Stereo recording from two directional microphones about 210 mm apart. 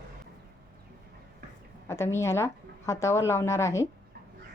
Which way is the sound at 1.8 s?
10° left (ahead or behind).